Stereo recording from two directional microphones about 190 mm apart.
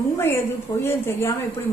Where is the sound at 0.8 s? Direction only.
15° left (ahead or behind).